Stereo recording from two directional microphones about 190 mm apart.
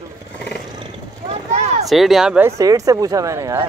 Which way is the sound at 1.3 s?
35° right (ahead or behind).